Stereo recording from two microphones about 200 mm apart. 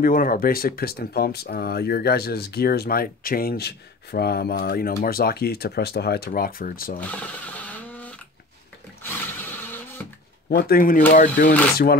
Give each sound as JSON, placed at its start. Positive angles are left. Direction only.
{"t": 0.0, "sound": "speech", "side_deg": 45}
{"t": 7.0, "sound": "a sound", "side_deg": 10}
{"t": 10.5, "sound": "speech", "side_deg": 50}